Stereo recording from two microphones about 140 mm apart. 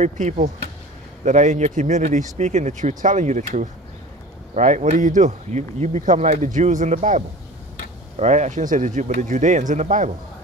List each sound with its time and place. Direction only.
0.0 s speech: 60° right (ahead or behind)